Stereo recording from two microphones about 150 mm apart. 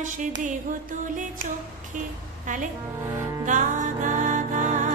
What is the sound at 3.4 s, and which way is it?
Music, 60° right (ahead or behind).